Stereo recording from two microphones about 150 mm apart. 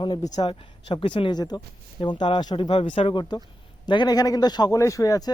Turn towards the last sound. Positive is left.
turn(degrees=25)  # may be behind; listen again after turning